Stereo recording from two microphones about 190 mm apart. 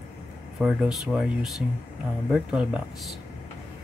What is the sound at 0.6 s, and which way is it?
Speech, 5° right (ahead or behind).